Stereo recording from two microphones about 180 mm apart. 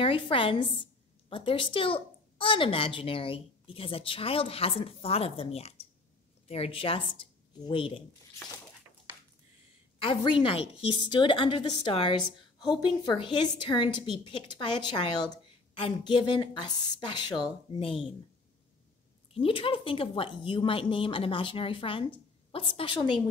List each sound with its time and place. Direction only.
0.0 s a woman's voice: 30° left (ahead or behind)
9.9 s a woman's voice: 30° left (ahead or behind)
19.3 s a woman's voice: 30° left (ahead or behind)